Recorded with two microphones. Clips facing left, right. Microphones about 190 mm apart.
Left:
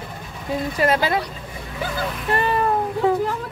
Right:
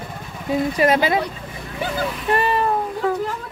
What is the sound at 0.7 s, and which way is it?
Speech, 15° right (ahead or behind).